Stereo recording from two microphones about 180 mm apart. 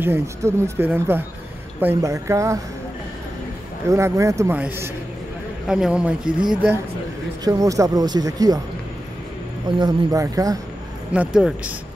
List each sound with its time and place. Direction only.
0.0 s speech: 15° right (ahead or behind)
3.9 s a man's voice: 15° right (ahead or behind)
7.4 s speech: 20° right (ahead or behind)
9.8 s speech: 20° right (ahead or behind)
11.1 s speech: 5° right (ahead or behind)